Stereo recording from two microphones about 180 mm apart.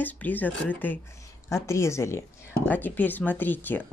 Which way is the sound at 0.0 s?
10° left (ahead or behind).